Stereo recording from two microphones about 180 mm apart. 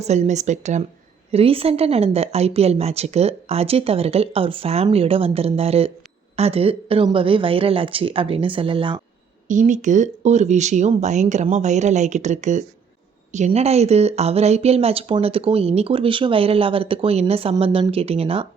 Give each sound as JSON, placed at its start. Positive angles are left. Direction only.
{"t": 0.0, "sound": "speech", "side_deg": -40}
{"t": 9.5, "sound": "speech", "side_deg": -45}